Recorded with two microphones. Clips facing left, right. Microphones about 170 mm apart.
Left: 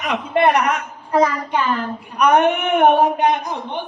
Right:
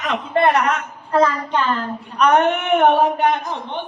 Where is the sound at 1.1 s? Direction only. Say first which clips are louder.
Even; 10° left (ahead or behind).